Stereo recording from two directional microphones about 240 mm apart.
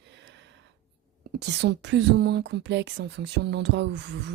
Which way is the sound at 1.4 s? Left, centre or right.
Right.